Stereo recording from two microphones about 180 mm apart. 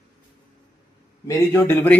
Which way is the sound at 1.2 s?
10° left (ahead or behind).